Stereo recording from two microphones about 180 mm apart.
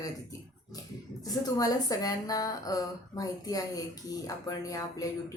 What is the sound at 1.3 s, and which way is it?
Speech, 20° left (ahead or behind).